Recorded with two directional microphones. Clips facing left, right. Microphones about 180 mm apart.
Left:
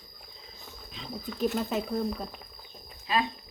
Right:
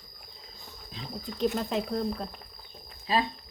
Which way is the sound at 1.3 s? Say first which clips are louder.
Right 1 dB; centre (ahead or behind).